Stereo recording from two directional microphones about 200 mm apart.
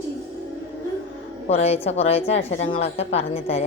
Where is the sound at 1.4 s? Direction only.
30° left (ahead or behind).